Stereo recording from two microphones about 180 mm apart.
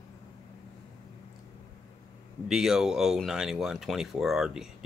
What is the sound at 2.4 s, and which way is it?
Speech, 5° right (ahead or behind).